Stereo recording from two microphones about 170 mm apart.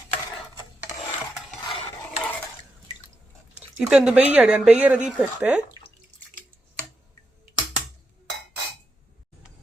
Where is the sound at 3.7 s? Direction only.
5° right (ahead or behind).